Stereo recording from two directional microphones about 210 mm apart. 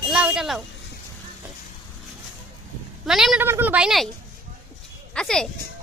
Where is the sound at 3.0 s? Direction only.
Centre (ahead or behind).